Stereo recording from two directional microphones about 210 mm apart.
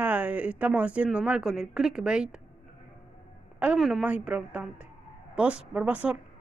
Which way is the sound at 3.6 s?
5° right (ahead or behind).